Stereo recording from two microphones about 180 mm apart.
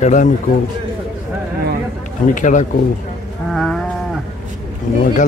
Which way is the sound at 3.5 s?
Centre (ahead or behind).